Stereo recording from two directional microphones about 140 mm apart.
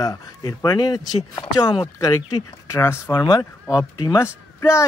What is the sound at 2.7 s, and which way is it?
Speech, 20° left (ahead or behind).